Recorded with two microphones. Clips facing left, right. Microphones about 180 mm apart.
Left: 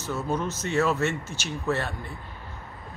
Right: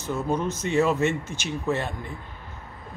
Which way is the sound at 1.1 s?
55° right (ahead or behind).